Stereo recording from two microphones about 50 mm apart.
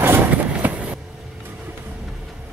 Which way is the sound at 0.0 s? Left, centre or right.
Right.